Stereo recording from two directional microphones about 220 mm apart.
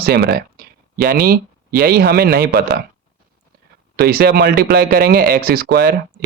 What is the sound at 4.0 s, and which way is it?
Speech, 45° right (ahead or behind).